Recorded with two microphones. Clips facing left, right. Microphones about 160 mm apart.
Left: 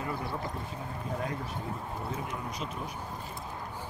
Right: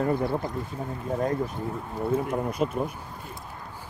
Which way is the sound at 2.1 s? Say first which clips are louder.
Right 10 dB; 55° right (ahead or behind).